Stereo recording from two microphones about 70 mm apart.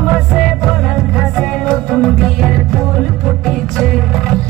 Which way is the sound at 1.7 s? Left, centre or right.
Centre.